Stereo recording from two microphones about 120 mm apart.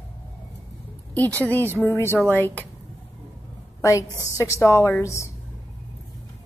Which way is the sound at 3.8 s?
25° left (ahead or behind).